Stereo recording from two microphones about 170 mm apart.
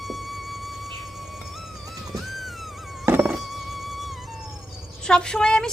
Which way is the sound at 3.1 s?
5° right (ahead or behind).